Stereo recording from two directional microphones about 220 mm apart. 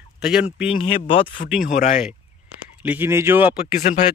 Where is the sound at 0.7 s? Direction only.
25° left (ahead or behind).